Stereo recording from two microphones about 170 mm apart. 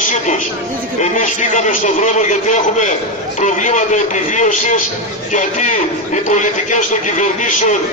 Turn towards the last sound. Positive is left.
turn(degrees=45)  # may be behind; listen again after turning